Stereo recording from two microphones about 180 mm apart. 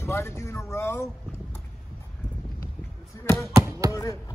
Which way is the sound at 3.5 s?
15° right (ahead or behind).